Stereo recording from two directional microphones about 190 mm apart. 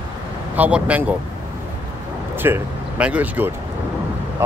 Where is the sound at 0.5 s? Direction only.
10° right (ahead or behind).